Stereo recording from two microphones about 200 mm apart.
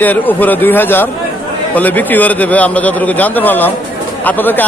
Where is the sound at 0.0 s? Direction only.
10° left (ahead or behind).